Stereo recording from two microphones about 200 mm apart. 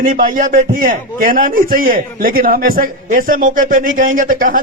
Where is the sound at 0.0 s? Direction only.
40° right (ahead or behind).